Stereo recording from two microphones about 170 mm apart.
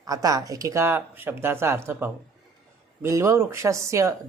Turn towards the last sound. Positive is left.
turn(degrees=-15)  # may be behind; listen again after turning